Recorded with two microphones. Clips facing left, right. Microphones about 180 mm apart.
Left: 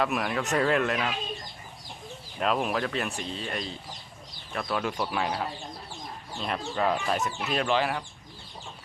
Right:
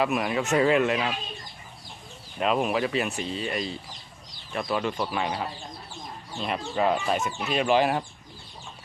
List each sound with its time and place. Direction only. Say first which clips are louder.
0.0 s speech: right 3 dB; 5° right (ahead or behind)
2.4 s speech: right 3 dB; 5° right (ahead or behind)
7.7 s speech: right 5 dB; 15° right (ahead or behind)